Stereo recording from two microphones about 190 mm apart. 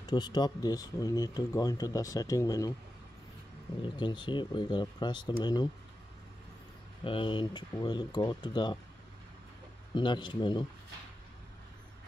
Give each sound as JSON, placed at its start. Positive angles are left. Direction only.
{"t": 0.0, "sound": "speech", "side_deg": 20}
{"t": 3.8, "sound": "speech", "side_deg": 25}
{"t": 7.1, "sound": "speech", "side_deg": 25}
{"t": 9.9, "sound": "speech", "side_deg": 25}